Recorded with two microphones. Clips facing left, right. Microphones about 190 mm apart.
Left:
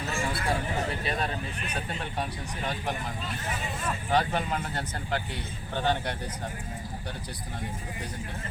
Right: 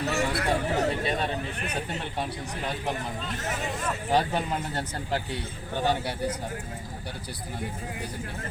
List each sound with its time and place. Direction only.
0.0 s a sound: 70° right (ahead or behind)
4.1 s speech: 35° right (ahead or behind)
5.7 s speech: 10° right (ahead or behind)